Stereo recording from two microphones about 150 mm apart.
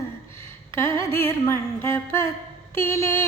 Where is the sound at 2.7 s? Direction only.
15° left (ahead or behind).